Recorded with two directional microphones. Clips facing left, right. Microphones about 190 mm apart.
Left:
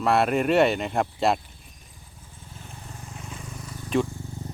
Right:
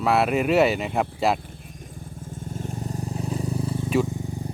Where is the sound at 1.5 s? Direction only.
50° right (ahead or behind); by 3.9 s 30° right (ahead or behind).